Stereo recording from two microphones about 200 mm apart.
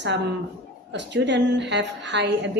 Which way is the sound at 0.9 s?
60° right (ahead or behind).